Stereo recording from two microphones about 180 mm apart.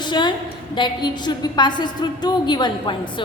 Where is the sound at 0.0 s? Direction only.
25° left (ahead or behind).